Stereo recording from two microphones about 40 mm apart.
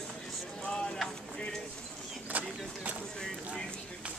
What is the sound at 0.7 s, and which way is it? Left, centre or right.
Speech, centre.